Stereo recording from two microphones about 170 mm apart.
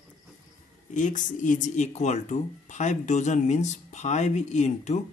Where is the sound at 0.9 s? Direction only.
50° left (ahead or behind).